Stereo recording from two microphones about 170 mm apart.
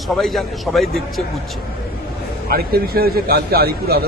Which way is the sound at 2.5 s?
65° right (ahead or behind).